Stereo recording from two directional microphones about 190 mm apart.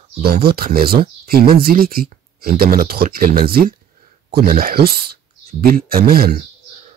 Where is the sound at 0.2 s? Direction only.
55° right (ahead or behind).